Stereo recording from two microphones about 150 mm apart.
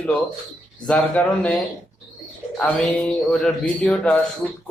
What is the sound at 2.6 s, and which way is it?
Speech, 5° left (ahead or behind).